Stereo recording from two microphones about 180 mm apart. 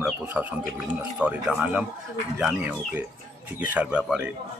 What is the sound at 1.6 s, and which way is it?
Speech, 5° right (ahead or behind).